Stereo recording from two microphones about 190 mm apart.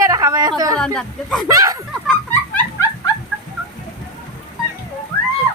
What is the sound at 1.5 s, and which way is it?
Speech, 20° right (ahead or behind).